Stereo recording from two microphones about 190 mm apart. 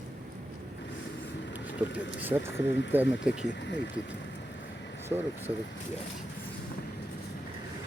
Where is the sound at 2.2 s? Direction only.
10° right (ahead or behind).